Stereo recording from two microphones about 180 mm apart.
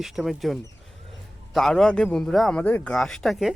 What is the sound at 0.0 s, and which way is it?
Speech, centre (ahead or behind).